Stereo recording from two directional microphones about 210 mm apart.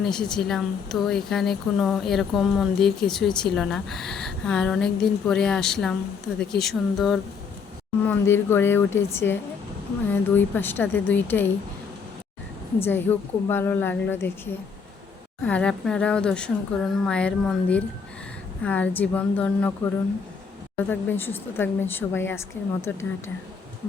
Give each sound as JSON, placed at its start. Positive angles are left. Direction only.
{"t": 0.0, "sound": "a woman's voice", "side_deg": 5}
{"t": 12.8, "sound": "a woman's voice", "side_deg": 10}
{"t": 15.4, "sound": "a woman's voice", "side_deg": 5}
{"t": 20.9, "sound": "a woman's voice", "side_deg": 10}